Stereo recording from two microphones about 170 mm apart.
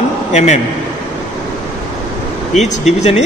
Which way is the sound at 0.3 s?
40° left (ahead or behind).